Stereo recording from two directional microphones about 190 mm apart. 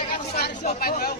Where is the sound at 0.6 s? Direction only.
50° left (ahead or behind).